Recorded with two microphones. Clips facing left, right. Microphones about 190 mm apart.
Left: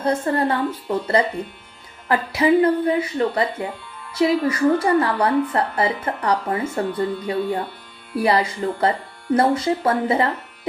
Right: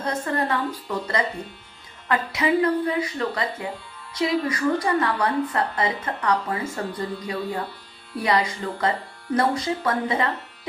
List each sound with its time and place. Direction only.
0.0 s a woman's voice: 30° left (ahead or behind)